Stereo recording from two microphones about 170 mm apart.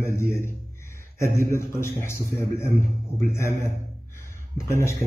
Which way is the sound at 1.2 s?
50° right (ahead or behind).